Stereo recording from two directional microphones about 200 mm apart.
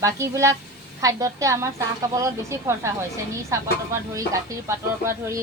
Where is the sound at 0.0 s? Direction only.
15° right (ahead or behind).